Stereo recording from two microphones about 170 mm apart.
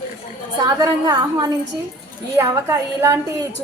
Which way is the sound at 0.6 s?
25° right (ahead or behind).